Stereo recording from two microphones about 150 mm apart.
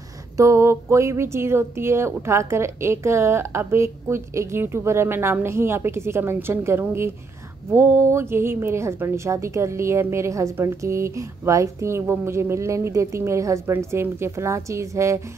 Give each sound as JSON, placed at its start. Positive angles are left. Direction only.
{"t": 0.4, "sound": "a woman's voice", "side_deg": -20}